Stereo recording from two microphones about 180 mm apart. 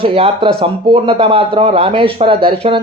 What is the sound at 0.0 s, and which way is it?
Speech, 30° right (ahead or behind).